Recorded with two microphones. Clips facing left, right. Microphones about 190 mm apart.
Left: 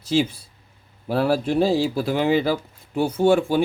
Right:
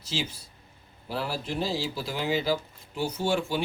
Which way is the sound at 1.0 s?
55° left (ahead or behind).